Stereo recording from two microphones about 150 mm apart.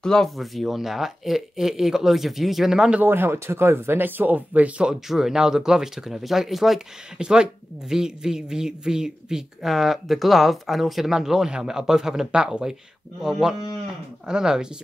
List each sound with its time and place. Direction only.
0.0 s speech: 5° left (ahead or behind)